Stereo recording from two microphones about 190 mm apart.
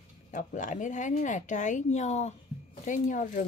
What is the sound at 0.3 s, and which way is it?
A woman's voice, 40° left (ahead or behind).